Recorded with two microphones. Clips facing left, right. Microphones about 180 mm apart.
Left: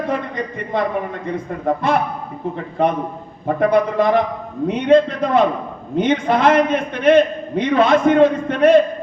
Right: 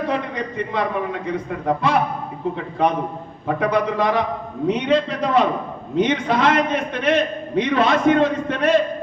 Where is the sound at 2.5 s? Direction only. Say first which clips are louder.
Left 2 dB; 50° left (ahead or behind).